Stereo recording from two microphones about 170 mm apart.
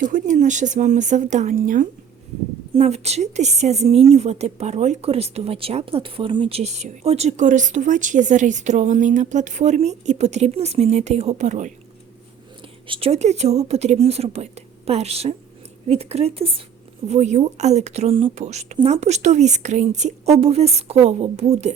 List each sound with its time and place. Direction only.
0.0 s speech: 45° right (ahead or behind)
2.7 s a woman's voice: 40° right (ahead or behind)
12.9 s a woman's voice: 35° right (ahead or behind)